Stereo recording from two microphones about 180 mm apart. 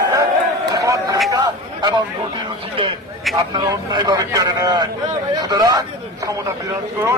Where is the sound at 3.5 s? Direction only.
20° right (ahead or behind).